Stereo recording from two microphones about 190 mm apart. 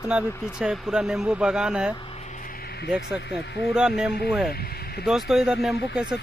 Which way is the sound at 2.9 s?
5° right (ahead or behind).